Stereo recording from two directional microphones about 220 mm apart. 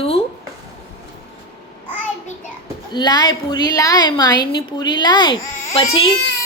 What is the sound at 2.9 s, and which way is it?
A woman's voice, 20° left (ahead or behind).